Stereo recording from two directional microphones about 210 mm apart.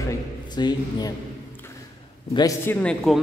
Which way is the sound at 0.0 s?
20° left (ahead or behind).